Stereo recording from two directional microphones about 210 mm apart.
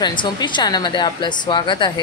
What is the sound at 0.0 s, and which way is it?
Speech, 20° left (ahead or behind).